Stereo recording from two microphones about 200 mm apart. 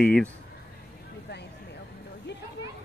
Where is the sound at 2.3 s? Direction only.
60° left (ahead or behind).